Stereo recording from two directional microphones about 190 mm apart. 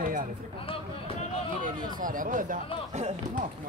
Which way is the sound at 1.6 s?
45° right (ahead or behind).